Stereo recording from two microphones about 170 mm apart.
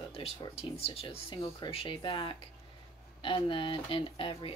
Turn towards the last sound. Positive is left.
turn(degrees=30)  # may be behind; listen again after turning